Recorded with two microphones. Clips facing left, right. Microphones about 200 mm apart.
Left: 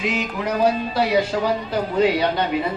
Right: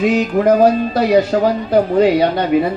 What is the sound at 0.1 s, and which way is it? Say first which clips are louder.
Speech: right 11 dB; 50° right (ahead or behind).